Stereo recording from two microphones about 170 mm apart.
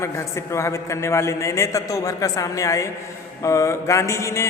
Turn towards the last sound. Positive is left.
turn(degrees=15)  # may be behind; listen again after turning